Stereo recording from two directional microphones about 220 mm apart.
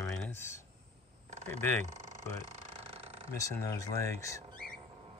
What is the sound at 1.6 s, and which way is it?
Speech, 5° left (ahead or behind).